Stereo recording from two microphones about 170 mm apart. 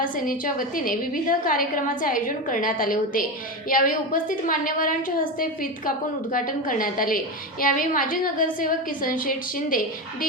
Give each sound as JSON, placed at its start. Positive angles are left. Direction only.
{"t": 0.0, "sound": "a woman's voice", "side_deg": 55}